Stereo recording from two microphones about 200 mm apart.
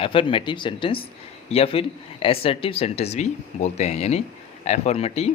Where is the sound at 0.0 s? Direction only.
25° left (ahead or behind).